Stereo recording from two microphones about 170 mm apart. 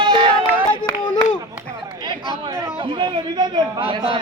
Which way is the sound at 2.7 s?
30° right (ahead or behind).